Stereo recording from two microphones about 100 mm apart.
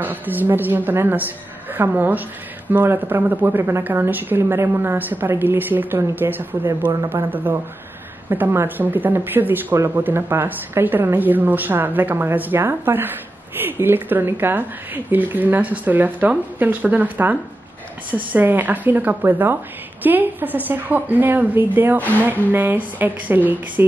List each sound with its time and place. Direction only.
0.0 s a woman's voice: 15° right (ahead or behind)